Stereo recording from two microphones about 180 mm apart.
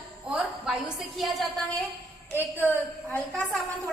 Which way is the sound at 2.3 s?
10° left (ahead or behind).